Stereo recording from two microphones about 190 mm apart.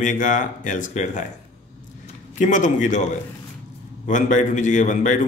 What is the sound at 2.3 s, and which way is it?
Speech, 40° left (ahead or behind).